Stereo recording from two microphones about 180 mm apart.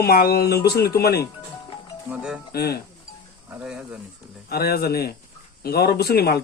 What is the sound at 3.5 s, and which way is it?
Speech, 5° right (ahead or behind).